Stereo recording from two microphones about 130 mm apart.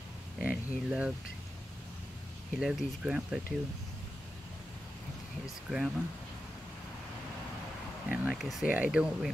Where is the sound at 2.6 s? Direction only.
10° right (ahead or behind).